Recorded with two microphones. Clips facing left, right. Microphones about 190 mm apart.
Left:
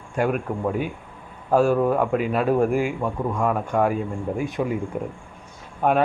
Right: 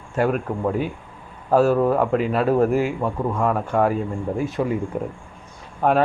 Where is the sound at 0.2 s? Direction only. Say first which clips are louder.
Right 2 dB; 5° left (ahead or behind).